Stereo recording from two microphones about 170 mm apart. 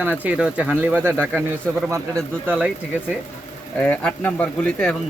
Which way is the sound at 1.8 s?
15° right (ahead or behind).